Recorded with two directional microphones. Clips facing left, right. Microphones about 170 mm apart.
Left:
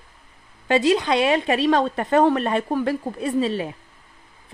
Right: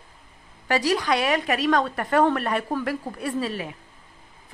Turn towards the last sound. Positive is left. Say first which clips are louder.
# left 5 dB
turn(degrees=25)  # may be behind; listen again after turning